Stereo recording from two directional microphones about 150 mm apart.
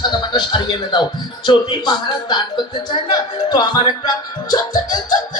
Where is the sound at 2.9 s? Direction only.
25° left (ahead or behind).